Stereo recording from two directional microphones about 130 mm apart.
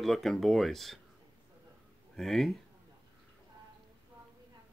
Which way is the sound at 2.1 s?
Centre (ahead or behind).